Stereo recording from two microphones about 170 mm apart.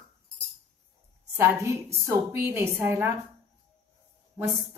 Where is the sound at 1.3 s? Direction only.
15° right (ahead or behind).